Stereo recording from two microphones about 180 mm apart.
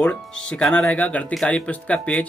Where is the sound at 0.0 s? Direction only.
5° left (ahead or behind).